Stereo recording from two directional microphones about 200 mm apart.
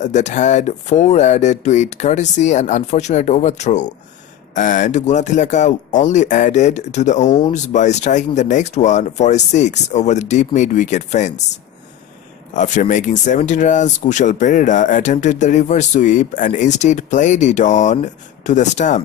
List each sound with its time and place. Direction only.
0.0 s speech: 35° left (ahead or behind)
12.5 s speech: 40° left (ahead or behind)